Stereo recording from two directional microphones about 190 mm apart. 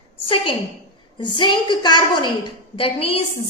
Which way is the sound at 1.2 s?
25° left (ahead or behind).